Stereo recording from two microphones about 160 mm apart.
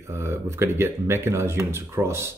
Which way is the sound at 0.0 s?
15° right (ahead or behind).